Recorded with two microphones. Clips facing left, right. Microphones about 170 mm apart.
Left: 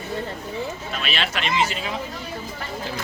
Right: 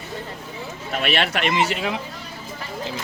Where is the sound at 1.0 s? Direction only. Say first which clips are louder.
Right 5 dB; 60° right (ahead or behind).